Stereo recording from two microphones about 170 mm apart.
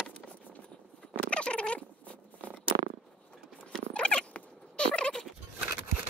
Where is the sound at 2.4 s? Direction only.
10° right (ahead or behind).